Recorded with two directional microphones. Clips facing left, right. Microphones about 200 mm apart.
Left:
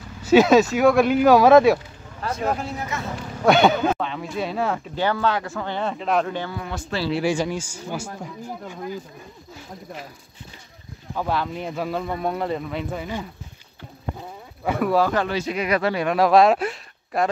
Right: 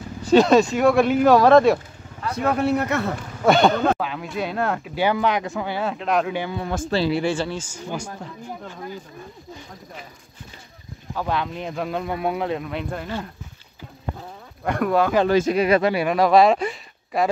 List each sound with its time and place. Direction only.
0.2 s speech: 5° left (ahead or behind)
2.3 s speech: 65° right (ahead or behind)
3.4 s speech: centre (ahead or behind)
4.9 s speech: 15° right (ahead or behind)
6.3 s speech: 15° right (ahead or behind)
6.9 s speech: 35° right (ahead or behind)
7.2 s speech: 10° left (ahead or behind)
11.1 s speech: 5° left (ahead or behind)
14.6 s speech: 5° left (ahead or behind)
15.2 s speech: 45° right (ahead or behind)
15.8 s speech: 10° right (ahead or behind)